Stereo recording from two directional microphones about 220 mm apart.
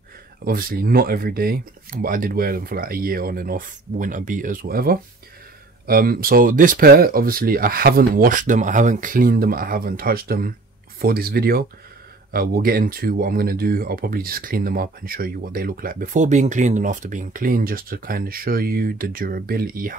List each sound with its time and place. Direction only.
0.5 s speech: 40° right (ahead or behind)